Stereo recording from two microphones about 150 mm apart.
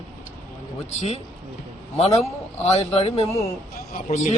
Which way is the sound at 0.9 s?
50° left (ahead or behind).